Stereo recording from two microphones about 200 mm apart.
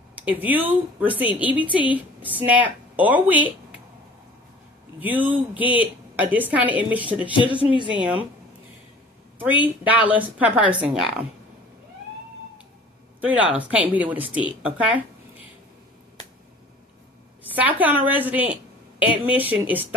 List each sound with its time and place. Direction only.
0.1 s a woman's voice: 10° right (ahead or behind)
5.0 s a woman's voice: 10° right (ahead or behind)
7.3 s speech: 25° left (ahead or behind)
7.9 s a woman's voice: 5° right (ahead or behind)
9.4 s a woman's voice: 10° right (ahead or behind)
13.2 s a woman's voice: 5° right (ahead or behind)
17.4 s a woman's voice: 10° right (ahead or behind)